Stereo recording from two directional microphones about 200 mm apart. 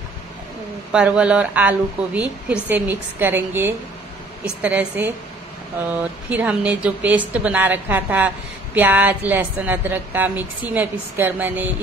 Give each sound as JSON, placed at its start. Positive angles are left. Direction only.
{"t": 0.9, "sound": "a woman's voice", "side_deg": -5}